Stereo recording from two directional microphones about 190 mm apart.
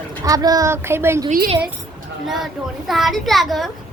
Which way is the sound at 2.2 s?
Centre (ahead or behind).